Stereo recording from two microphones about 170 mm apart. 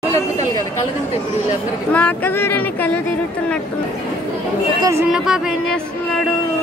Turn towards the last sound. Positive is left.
turn(degrees=-5)  # may be behind; listen again after turning